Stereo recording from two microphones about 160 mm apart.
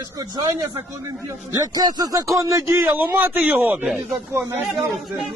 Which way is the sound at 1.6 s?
25° right (ahead or behind).